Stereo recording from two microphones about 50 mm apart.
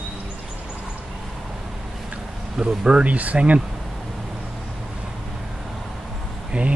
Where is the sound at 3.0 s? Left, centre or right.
Right.